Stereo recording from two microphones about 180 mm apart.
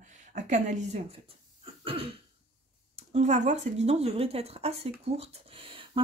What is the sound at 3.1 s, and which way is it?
Speech, 40° right (ahead or behind).